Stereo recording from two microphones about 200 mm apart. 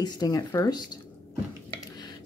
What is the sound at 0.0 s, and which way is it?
Speech, 20° left (ahead or behind).